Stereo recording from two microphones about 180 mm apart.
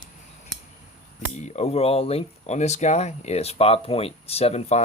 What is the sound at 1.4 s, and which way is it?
Speech, 40° left (ahead or behind).